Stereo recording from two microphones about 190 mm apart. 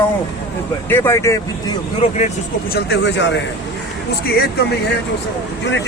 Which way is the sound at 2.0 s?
35° left (ahead or behind).